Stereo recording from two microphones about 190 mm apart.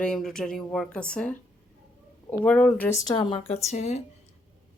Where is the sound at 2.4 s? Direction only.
5° left (ahead or behind).